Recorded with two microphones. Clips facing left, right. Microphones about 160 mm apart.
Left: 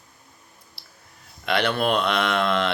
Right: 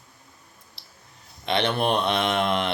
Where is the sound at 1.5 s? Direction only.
25° right (ahead or behind).